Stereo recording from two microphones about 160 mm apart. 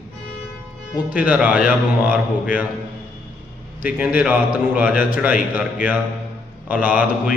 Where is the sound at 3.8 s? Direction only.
10° right (ahead or behind).